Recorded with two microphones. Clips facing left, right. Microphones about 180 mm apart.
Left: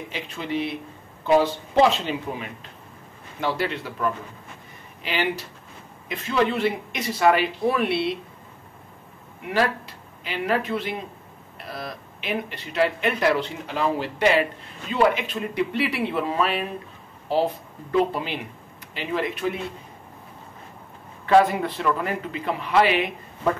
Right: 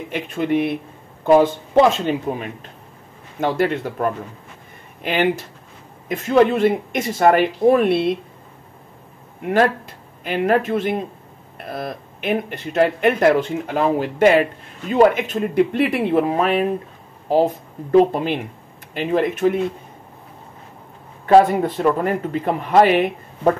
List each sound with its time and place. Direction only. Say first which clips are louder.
0.1 s speech: right 10 dB; 55° right (ahead or behind)
10.2 s speech: right 7 dB; 50° right (ahead or behind)
21.3 s speech: right 5 dB; 40° right (ahead or behind)